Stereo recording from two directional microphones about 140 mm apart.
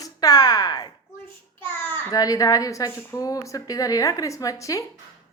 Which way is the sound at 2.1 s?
25° left (ahead or behind).